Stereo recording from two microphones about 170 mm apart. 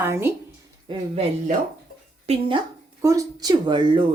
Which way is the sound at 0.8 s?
35° right (ahead or behind).